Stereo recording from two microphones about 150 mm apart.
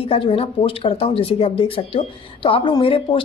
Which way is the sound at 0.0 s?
40° left (ahead or behind).